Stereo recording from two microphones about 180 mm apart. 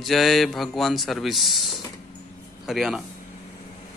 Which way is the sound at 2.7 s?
Centre (ahead or behind).